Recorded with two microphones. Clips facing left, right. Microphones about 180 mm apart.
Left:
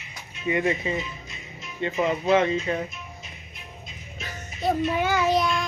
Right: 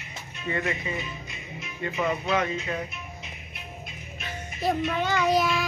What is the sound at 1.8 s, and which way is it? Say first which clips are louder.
Speech: left 4 dB; 20° left (ahead or behind).